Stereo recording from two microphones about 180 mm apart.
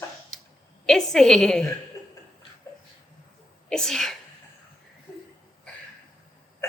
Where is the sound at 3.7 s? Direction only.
Centre (ahead or behind).